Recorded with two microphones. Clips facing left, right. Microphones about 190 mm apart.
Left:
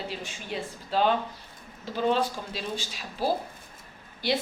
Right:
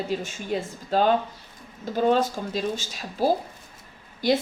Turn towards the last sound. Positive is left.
turn(degrees=-45)  # may be behind; listen again after turning